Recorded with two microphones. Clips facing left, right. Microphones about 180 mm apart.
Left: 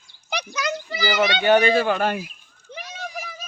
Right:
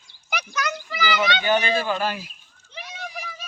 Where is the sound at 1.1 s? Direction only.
55° left (ahead or behind).